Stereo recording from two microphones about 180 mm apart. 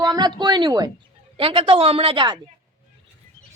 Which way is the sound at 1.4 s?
30° right (ahead or behind).